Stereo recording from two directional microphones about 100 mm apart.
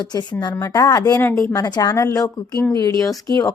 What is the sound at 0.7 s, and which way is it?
Speech, 35° left (ahead or behind).